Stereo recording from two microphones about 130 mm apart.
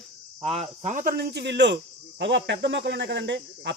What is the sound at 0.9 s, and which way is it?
Speech, 90° right.